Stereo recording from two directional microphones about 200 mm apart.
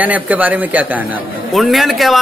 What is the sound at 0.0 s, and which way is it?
Speech, 10° right (ahead or behind).